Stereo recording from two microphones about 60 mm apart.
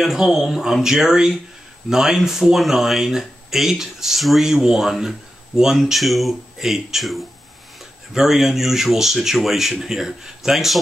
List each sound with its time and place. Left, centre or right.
0.0 s speech: centre